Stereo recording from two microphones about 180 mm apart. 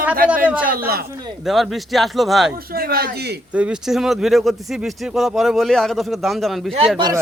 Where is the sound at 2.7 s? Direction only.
55° right (ahead or behind).